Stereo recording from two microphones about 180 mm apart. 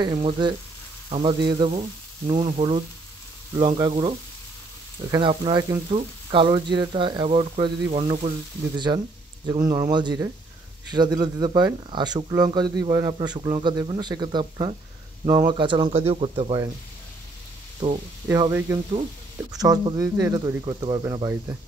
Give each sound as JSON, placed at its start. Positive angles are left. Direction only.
{"t": 0.0, "sound": "speech", "side_deg": -25}
{"t": 5.1, "sound": "speech", "side_deg": -30}
{"t": 8.7, "sound": "speech", "side_deg": -25}
{"t": 18.3, "sound": "speech", "side_deg": -15}